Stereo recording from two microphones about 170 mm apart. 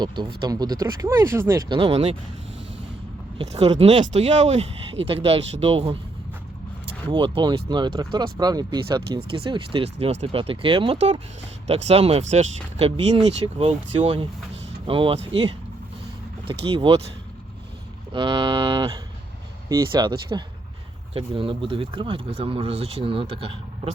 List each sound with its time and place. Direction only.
0.4 s speech: 20° right (ahead or behind)
3.3 s speech: 40° right (ahead or behind)
7.1 s speech: 30° right (ahead or behind)
18.1 s speech: 30° right (ahead or behind)